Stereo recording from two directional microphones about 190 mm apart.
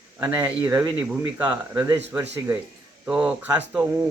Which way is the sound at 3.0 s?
5° right (ahead or behind).